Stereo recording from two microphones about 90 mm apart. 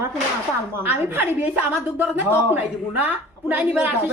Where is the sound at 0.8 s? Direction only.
20° right (ahead or behind).